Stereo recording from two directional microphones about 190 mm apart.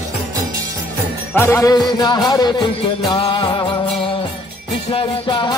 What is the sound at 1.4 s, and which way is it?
Music, 15° left (ahead or behind).